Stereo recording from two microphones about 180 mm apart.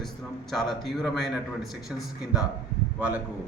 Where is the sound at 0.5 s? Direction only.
Centre (ahead or behind).